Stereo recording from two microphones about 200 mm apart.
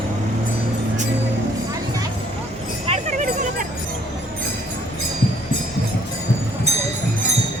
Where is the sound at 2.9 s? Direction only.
35° right (ahead or behind).